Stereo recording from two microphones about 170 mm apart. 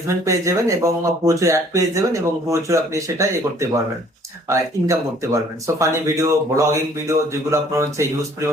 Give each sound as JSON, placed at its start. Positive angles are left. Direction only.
{"t": 0.1, "sound": "speech", "side_deg": -20}